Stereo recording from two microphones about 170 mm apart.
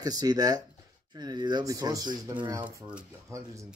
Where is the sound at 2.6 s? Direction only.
15° right (ahead or behind).